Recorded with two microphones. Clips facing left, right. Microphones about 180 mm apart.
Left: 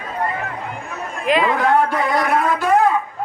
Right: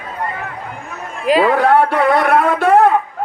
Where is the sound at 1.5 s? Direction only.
70° right (ahead or behind).